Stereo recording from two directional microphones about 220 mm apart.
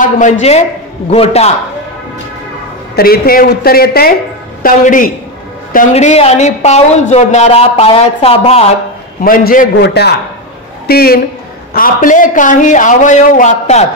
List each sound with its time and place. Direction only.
0.0 s a man's voice: 30° left (ahead or behind)
3.0 s a man's voice: 40° left (ahead or behind); by 8.6 s 25° left (ahead or behind)
9.2 s a man's voice: 40° left (ahead or behind)